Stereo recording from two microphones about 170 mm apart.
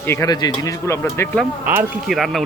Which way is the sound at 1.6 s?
5° right (ahead or behind).